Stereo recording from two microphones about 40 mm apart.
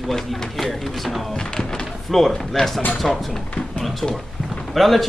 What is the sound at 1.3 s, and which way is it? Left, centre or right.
Speech, centre.